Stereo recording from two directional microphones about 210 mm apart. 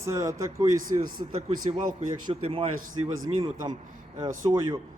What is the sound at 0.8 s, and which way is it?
Speech, 40° right (ahead or behind).